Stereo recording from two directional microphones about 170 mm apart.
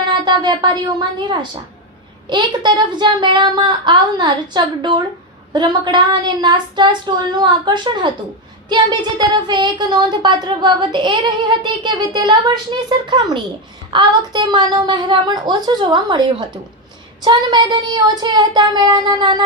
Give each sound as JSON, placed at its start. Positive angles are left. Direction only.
{"t": 0.1, "sound": "a woman's voice", "side_deg": -25}